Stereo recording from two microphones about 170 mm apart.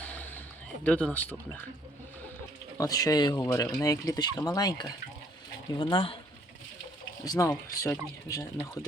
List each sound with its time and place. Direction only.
0.0 s a sound: 10° left (ahead or behind)
0.9 s speech: 10° left (ahead or behind)
2.7 s speech: 20° left (ahead or behind)
7.3 s speech: 20° left (ahead or behind)